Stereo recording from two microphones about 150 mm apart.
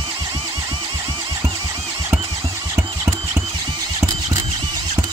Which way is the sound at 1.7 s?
40° right (ahead or behind).